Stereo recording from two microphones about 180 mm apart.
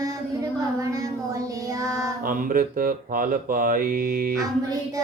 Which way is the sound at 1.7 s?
20° right (ahead or behind).